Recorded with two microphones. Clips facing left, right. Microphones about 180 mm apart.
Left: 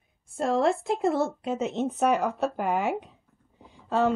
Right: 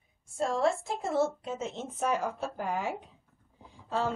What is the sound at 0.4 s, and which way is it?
A woman's voice, 60° left (ahead or behind).